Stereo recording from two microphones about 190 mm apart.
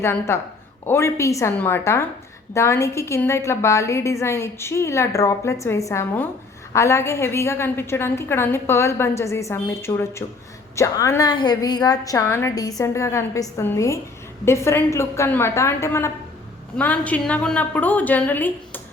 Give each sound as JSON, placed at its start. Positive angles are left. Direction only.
{"t": 0.0, "sound": "a woman's voice", "side_deg": 15}